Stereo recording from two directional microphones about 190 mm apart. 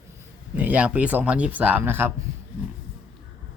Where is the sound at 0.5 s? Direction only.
10° right (ahead or behind).